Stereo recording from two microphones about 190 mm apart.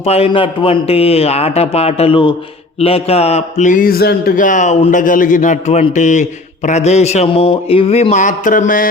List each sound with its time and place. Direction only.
0.0 s a man's voice: 30° left (ahead or behind)